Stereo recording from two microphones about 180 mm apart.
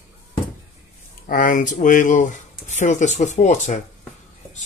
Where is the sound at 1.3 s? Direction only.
45° left (ahead or behind).